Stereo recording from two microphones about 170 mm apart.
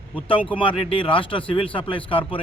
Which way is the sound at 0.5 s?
30° left (ahead or behind).